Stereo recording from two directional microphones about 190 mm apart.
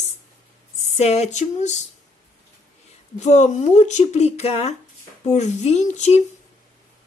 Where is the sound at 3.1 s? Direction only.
35° left (ahead or behind).